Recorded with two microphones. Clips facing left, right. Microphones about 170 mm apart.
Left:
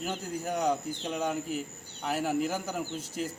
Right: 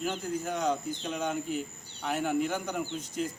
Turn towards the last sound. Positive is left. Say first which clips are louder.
# right 1 dB
turn(degrees=5)  # may be behind; listen again after turning